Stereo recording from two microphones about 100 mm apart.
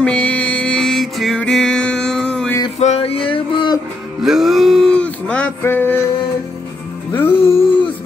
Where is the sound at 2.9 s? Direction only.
70° left (ahead or behind); by 3.8 s 50° left (ahead or behind).